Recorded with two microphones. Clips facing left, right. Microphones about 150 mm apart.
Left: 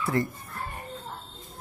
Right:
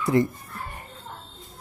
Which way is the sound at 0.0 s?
20° right (ahead or behind).